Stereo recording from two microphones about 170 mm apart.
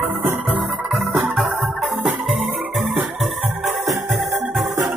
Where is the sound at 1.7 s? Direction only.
Centre (ahead or behind).